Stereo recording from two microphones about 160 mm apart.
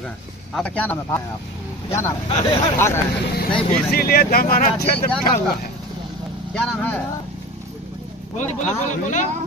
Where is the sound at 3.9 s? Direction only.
70° left (ahead or behind).